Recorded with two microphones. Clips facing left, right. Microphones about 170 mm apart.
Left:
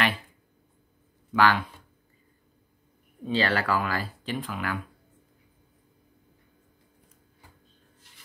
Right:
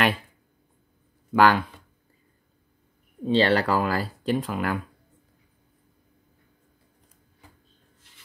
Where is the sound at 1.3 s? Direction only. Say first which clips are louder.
Right 4 dB; 45° right (ahead or behind).